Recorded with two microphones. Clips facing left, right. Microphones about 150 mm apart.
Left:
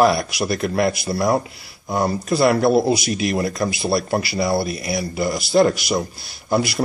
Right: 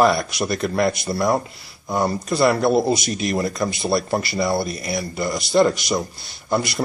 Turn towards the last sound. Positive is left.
turn(degrees=5)  # may be behind; listen again after turning